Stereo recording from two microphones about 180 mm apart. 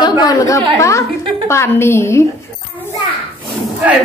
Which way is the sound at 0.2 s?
20° left (ahead or behind).